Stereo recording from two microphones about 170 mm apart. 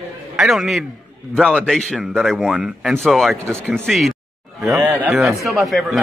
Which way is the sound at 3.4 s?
15° right (ahead or behind).